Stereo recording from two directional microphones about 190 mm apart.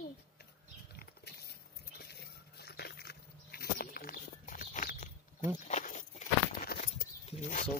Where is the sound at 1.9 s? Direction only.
55° left (ahead or behind); by 6.0 s 40° left (ahead or behind).